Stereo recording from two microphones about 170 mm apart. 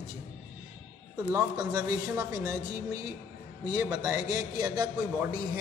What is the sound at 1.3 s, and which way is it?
Speech, 20° right (ahead or behind).